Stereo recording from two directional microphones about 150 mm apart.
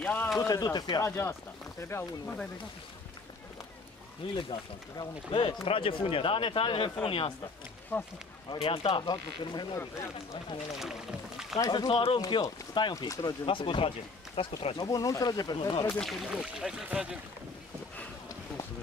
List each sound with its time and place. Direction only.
0.0 s a sound: 10° left (ahead or behind)
0.4 s speech: 25° left (ahead or behind)
1.8 s speech: 15° left (ahead or behind)
4.4 s speech: 35° left (ahead or behind)
7.9 s speech: 10° left (ahead or behind)
8.5 s speech: 35° left (ahead or behind)
9.8 s speech: 20° left (ahead or behind)
10.7 s speech: centre (ahead or behind)
11.6 s speech: 30° left (ahead or behind)
14.9 s speech: 25° left (ahead or behind)
15.9 s speech: 5° left (ahead or behind)